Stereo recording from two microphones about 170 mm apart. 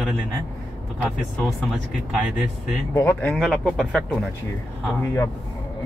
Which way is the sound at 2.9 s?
15° left (ahead or behind).